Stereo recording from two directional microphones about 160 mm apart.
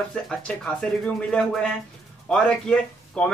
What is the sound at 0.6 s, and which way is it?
Speech, 5° left (ahead or behind).